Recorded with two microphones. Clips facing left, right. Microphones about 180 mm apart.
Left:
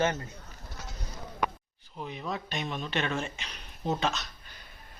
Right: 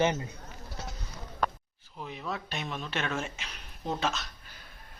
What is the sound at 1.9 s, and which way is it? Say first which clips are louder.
Speech: left 1 dB; centre (ahead or behind).